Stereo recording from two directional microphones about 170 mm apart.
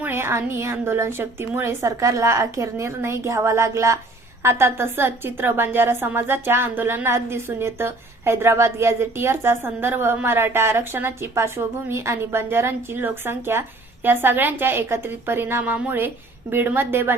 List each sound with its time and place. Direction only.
0.0 s a woman's voice: 15° right (ahead or behind)